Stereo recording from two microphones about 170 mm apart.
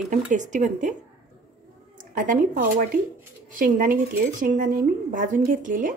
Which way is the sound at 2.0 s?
50° right (ahead or behind).